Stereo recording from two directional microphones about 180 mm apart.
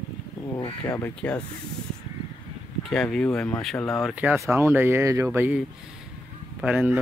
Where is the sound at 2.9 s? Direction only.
5° left (ahead or behind).